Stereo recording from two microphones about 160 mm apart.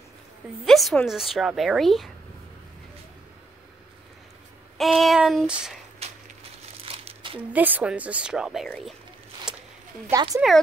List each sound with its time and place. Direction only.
0.7 s a woman's voice: centre (ahead or behind)
4.7 s a woman's voice: centre (ahead or behind)
6.0 s a sound: 40° right (ahead or behind)
6.9 s crumpling: 35° right (ahead or behind)
7.5 s a woman's voice: 10° right (ahead or behind)
9.5 s a sound: 5° right (ahead or behind)
10.1 s speech: 25° right (ahead or behind)